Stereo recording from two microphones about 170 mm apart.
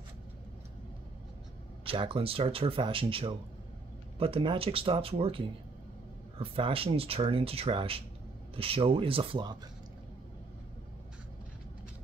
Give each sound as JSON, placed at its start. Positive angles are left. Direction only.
{"t": 1.9, "sound": "speech", "side_deg": -30}